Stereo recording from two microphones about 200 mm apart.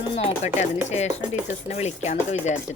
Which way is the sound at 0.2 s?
35° left (ahead or behind).